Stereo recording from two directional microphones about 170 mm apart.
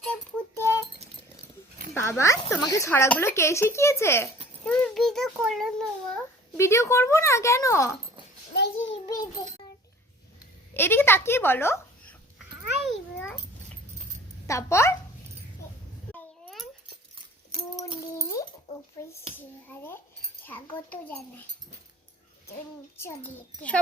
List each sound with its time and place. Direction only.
0.0 s music: 10° left (ahead or behind)
2.0 s a child's voice: 15° left (ahead or behind)
6.6 s speech: 15° left (ahead or behind)
8.5 s child singing: 90° left
9.0 s a sound: 20° left (ahead or behind)
10.8 s speech: 15° left (ahead or behind)
14.4 s speech: 15° left (ahead or behind)
16.1 s a sound: centre (ahead or behind)
19.6 s speech: 10° left (ahead or behind)
23.0 s speech: 10° left (ahead or behind)